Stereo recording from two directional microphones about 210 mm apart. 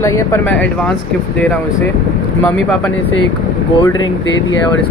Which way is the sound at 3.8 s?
20° left (ahead or behind).